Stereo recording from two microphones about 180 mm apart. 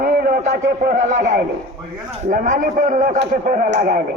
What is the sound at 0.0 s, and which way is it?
A man's voice, 45° right (ahead or behind).